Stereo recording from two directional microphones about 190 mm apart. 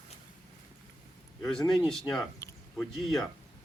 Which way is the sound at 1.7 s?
Centre (ahead or behind).